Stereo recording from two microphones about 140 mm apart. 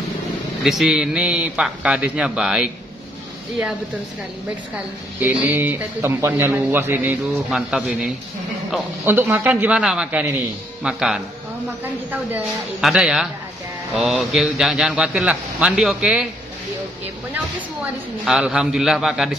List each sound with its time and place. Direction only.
0.7 s a man's voice: 5° right (ahead or behind)
5.2 s a man's voice: 10° right (ahead or behind)
9.0 s a man's voice: 15° right (ahead or behind)
12.8 s a man's voice: 5° right (ahead or behind)
18.2 s a man's voice: 5° right (ahead or behind)